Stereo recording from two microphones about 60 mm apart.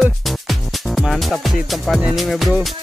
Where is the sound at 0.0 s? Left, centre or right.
Centre.